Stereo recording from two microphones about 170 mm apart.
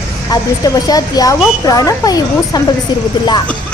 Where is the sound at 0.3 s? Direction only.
20° left (ahead or behind).